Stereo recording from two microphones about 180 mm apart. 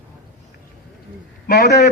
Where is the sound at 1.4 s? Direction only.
65° left (ahead or behind).